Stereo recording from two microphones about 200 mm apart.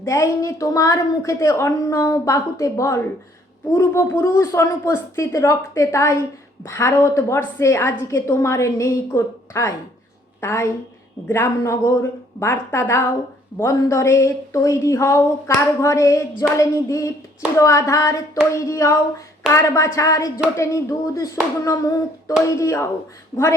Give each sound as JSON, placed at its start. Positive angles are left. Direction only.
{"t": 0.0, "sound": "a woman's voice", "side_deg": 15}